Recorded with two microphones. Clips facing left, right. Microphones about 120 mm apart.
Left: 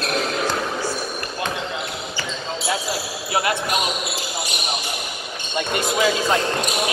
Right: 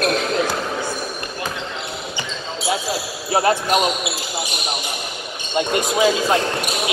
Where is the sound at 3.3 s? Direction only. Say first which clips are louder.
Right 5 dB; 35° right (ahead or behind).